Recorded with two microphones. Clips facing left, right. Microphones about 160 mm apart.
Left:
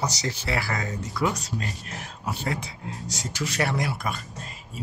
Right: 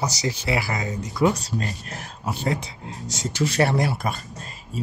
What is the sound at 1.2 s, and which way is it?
Speech, 30° right (ahead or behind).